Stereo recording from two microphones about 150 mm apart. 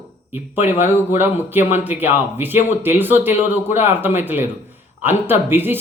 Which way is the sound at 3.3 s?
50° left (ahead or behind).